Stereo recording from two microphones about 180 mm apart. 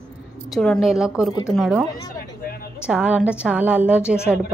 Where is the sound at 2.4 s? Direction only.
55° left (ahead or behind).